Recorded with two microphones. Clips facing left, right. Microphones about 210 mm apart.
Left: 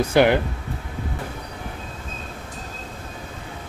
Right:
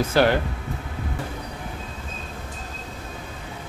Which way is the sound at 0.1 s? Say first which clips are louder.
Left 3 dB; 15° left (ahead or behind).